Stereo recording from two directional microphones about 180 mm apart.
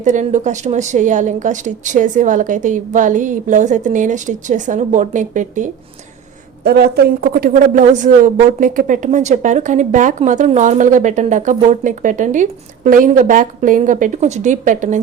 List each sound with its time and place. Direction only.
0.0 s speech: 40° right (ahead or behind)
6.7 s speech: 60° right (ahead or behind); by 15.0 s 45° right (ahead or behind)